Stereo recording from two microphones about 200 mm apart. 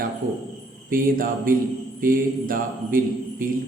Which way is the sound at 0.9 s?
45° right (ahead or behind).